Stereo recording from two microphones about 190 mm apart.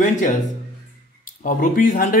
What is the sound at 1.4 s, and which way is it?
Speech, 45° left (ahead or behind).